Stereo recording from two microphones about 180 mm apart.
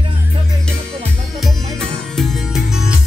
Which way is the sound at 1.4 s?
Centre (ahead or behind).